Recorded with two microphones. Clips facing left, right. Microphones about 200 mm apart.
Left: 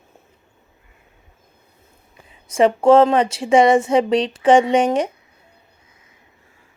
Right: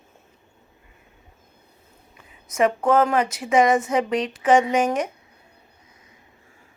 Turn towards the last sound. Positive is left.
turn(degrees=30)  # may be behind; listen again after turning